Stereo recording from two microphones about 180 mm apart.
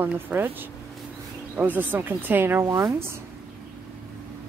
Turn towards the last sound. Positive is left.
turn(degrees=-15)  # may be behind; listen again after turning